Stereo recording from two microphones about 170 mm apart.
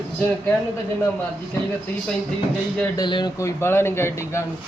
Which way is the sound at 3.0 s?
25° left (ahead or behind).